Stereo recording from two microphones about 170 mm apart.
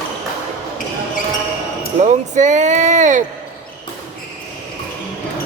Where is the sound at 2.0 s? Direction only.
45° right (ahead or behind).